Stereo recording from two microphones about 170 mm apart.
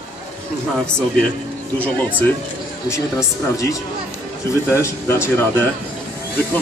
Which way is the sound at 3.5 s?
20° left (ahead or behind).